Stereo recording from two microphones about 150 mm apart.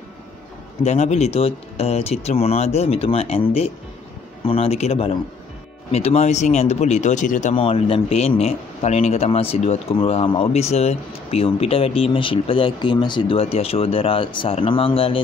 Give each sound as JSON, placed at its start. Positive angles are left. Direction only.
{"t": 0.8, "sound": "a man's voice", "side_deg": 50}
{"t": 7.5, "sound": "a man's voice", "side_deg": 40}